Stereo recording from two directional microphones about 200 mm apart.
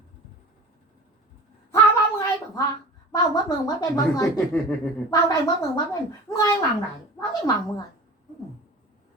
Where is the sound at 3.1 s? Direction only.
20° left (ahead or behind).